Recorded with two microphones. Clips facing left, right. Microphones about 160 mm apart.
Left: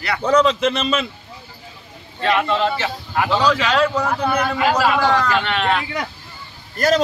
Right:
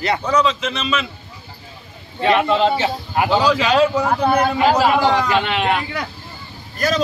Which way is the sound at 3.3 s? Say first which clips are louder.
Right 1 dB; 5° right (ahead or behind).